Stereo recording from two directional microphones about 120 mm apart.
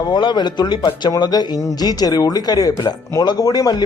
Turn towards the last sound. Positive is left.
turn(degrees=30)  # may be behind; listen again after turning